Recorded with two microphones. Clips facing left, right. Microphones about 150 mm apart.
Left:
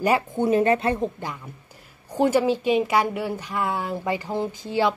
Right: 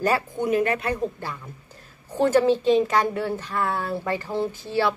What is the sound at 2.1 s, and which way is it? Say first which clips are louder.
A woman's voice: right 1 dB; 10° left (ahead or behind).